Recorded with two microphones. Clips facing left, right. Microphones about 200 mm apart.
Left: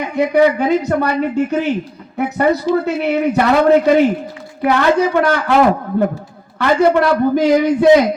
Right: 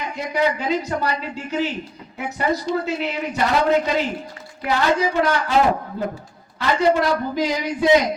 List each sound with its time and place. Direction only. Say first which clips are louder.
0.0 s speech: left 9 dB; 60° left (ahead or behind)
6.6 s speech: left 6 dB; 60° left (ahead or behind)